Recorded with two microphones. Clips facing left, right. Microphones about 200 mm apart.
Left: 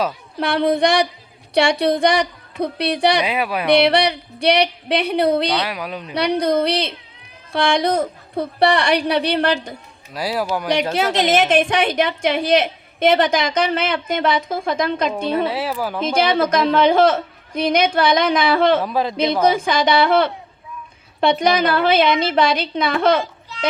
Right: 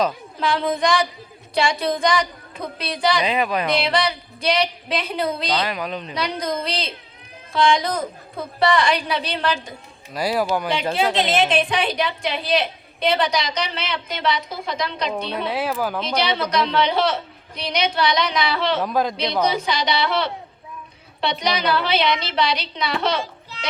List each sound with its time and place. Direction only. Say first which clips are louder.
0.3 s a woman's voice: left 5 dB; 70° left (ahead or behind)
3.2 s speech: even; 10° left (ahead or behind)
3.7 s a woman's voice: left 6 dB; 70° left (ahead or behind)
5.6 s speech: even; 10° left (ahead or behind)
6.1 s a woman's voice: left 9 dB; 65° left (ahead or behind)
10.2 s speech: right 1 dB; 5° left (ahead or behind)
11.2 s a woman's voice: left 7 dB; 45° left (ahead or behind)
15.4 s speech: left 1 dB; 5° left (ahead or behind)
16.0 s a woman's voice: left 10 dB; 50° left (ahead or behind)
18.8 s speech: left 1 dB; 5° left (ahead or behind)
19.1 s a woman's voice: left 5 dB; 50° left (ahead or behind)